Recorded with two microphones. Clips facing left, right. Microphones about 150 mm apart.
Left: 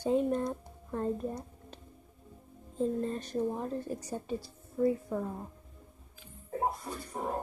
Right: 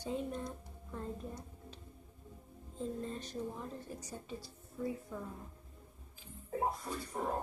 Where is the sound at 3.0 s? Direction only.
60° left (ahead or behind).